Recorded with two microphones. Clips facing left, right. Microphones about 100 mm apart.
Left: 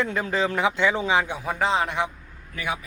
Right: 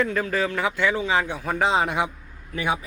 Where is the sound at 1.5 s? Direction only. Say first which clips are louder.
Right 2 dB; centre (ahead or behind).